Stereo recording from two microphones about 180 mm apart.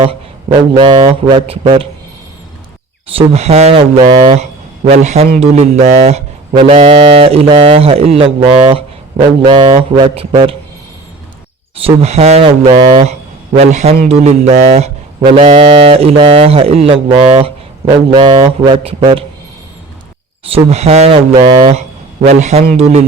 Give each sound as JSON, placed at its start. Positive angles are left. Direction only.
{"t": 0.0, "sound": "a man's voice", "side_deg": -30}
{"t": 3.2, "sound": "speech", "side_deg": -35}
{"t": 11.7, "sound": "speech", "side_deg": -30}
{"t": 20.4, "sound": "speech", "side_deg": -35}